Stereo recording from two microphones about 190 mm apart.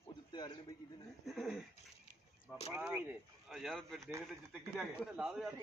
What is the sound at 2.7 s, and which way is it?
A man's voice, 10° right (ahead or behind).